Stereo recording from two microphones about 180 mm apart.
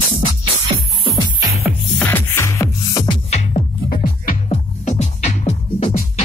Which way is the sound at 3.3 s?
40° left (ahead or behind).